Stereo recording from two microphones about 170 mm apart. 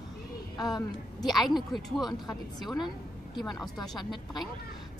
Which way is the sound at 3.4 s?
Centre (ahead or behind).